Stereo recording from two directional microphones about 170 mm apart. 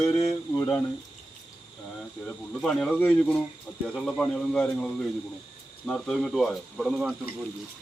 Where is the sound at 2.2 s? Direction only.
Centre (ahead or behind).